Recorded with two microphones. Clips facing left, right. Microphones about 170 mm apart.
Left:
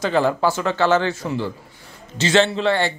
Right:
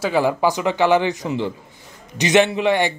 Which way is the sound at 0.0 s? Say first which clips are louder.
Even; 10° right (ahead or behind).